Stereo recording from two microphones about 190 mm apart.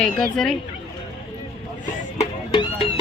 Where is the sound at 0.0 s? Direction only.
5° left (ahead or behind).